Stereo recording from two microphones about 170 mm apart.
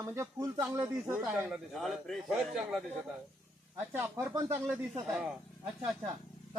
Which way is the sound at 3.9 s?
15° right (ahead or behind).